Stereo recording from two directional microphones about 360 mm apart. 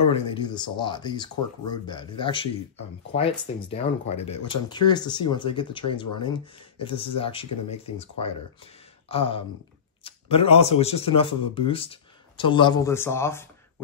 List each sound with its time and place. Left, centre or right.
0.1 s a man's voice: centre